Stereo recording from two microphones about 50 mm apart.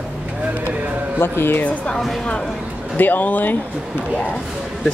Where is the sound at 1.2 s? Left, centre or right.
Left.